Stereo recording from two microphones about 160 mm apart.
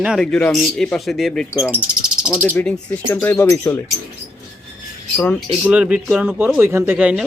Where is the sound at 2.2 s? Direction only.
5° right (ahead or behind).